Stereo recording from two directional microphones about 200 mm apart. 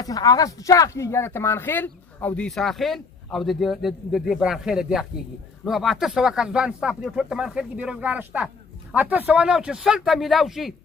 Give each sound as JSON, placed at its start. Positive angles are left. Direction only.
{"t": 0.0, "sound": "speech", "side_deg": 20}